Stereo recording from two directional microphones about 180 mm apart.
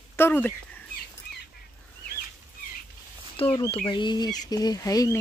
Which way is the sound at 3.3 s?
30° left (ahead or behind).